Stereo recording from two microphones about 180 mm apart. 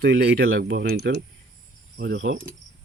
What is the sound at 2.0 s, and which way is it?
Speech, 80° right.